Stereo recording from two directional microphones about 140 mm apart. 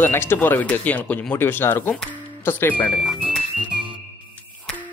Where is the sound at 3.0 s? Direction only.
5° right (ahead or behind).